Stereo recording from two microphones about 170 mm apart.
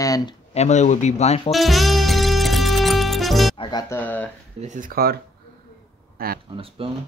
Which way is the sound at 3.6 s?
25° left (ahead or behind).